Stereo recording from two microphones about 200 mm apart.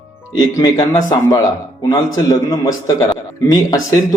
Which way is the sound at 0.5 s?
25° left (ahead or behind).